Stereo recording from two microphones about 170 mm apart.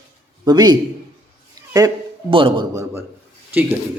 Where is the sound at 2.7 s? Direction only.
15° right (ahead or behind).